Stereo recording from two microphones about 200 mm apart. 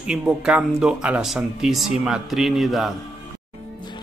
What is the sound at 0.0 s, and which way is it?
Speech, 5° right (ahead or behind).